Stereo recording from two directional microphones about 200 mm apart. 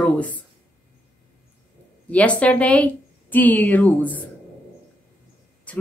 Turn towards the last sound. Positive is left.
turn(degrees=5)  # may be behind; listen again after turning